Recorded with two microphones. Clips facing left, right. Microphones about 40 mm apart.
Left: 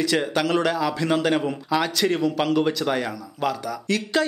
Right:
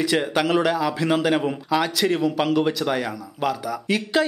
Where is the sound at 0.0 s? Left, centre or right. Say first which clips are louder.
Right 1 dB; centre.